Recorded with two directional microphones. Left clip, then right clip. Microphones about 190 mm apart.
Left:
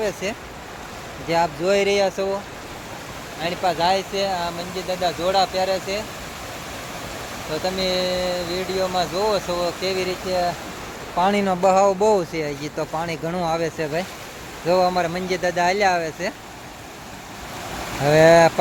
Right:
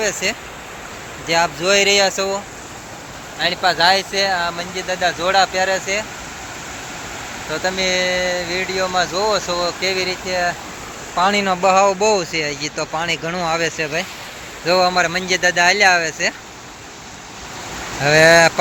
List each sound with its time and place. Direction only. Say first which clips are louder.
0.0 s speech: right 5 dB; 10° left (ahead or behind)
3.4 s speech: right 6 dB; 5° left (ahead or behind)
7.5 s speech: right 4 dB; 5° left (ahead or behind)
18.0 s speech: right 2 dB; 10° left (ahead or behind)